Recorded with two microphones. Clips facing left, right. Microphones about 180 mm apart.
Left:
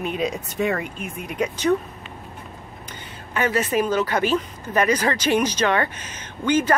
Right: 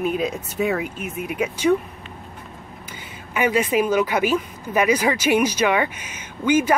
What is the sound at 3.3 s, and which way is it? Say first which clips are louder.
Speech: right 2 dB; 10° right (ahead or behind).